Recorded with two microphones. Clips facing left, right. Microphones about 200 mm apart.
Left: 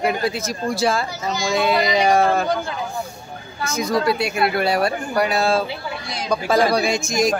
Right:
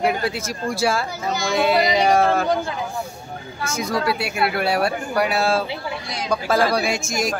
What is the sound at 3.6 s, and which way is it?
Speech, 10° right (ahead or behind).